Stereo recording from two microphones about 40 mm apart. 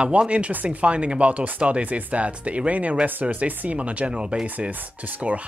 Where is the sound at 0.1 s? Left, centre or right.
Right.